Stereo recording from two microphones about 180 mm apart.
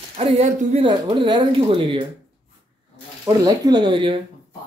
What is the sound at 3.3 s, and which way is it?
Speech, 20° right (ahead or behind).